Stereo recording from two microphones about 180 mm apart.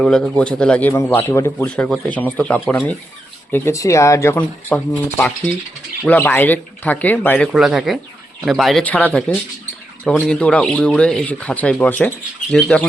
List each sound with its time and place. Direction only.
0.0 s speech: 5° left (ahead or behind)
3.5 s speech: 15° left (ahead or behind)
6.0 s speech: 10° left (ahead or behind)